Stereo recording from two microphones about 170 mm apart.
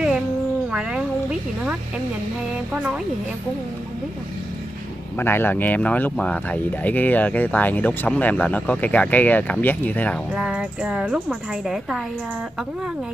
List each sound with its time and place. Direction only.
0.7 s speech: 5° right (ahead or behind)
5.1 s speech: 15° left (ahead or behind)
10.3 s a woman's voice: 5° right (ahead or behind)